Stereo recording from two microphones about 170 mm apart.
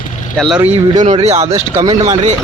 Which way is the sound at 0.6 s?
40° right (ahead or behind).